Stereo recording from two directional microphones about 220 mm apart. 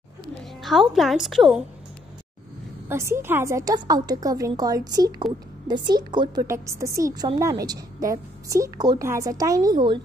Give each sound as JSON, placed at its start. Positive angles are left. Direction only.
{"t": 0.4, "sound": "a woman's voice", "side_deg": 0}
{"t": 2.9, "sound": "a woman's voice", "side_deg": -10}